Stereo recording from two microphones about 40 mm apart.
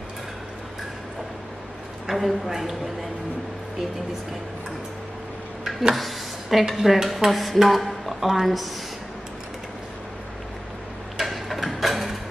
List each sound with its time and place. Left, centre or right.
2.0 s a woman's voice: centre
5.9 s a sound: centre
6.8 s dishes: centre
7.2 s a sound: centre
7.5 s a woman's voice: centre
11.1 s tick-tock: centre